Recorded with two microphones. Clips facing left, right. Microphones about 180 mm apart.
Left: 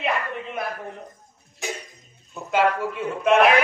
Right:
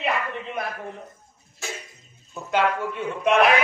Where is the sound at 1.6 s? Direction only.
15° left (ahead or behind).